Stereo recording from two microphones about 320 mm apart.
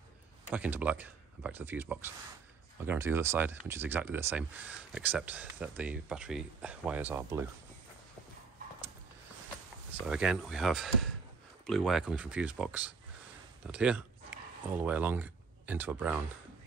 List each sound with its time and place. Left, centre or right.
0.5 s speech: centre
10.0 s speech: centre